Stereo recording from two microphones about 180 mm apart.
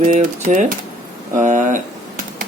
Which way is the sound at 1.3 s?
45° right (ahead or behind).